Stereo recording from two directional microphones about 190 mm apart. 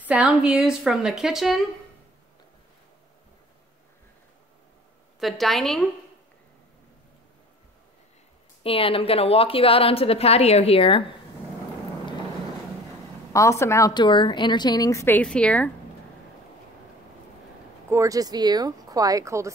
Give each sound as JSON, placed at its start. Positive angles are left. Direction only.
{"t": 0.0, "sound": "a woman's voice", "side_deg": -10}
{"t": 5.2, "sound": "a woman's voice", "side_deg": 0}
{"t": 8.6, "sound": "a woman's voice", "side_deg": 30}
{"t": 13.3, "sound": "a woman's voice", "side_deg": 15}
{"t": 17.8, "sound": "speech", "side_deg": -15}